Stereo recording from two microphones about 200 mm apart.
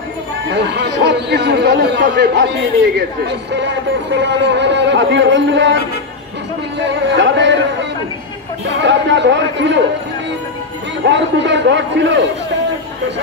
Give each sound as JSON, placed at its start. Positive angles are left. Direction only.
{"t": 0.5, "sound": "speech", "side_deg": -55}
{"t": 6.9, "sound": "a sound", "side_deg": -65}
{"t": 8.8, "sound": "speech", "side_deg": -65}
{"t": 11.1, "sound": "speech", "side_deg": -60}